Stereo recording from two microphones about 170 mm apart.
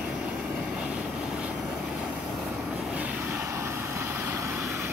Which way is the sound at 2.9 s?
10° right (ahead or behind).